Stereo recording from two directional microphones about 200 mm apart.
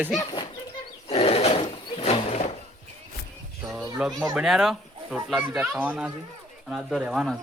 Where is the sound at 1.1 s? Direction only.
30° left (ahead or behind).